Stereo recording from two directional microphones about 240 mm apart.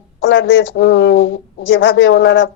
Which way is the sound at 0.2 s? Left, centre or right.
Left.